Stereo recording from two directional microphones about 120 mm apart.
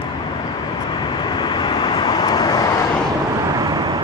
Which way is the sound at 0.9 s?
40° left (ahead or behind).